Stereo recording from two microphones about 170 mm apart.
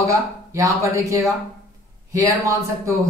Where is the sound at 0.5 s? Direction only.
20° right (ahead or behind).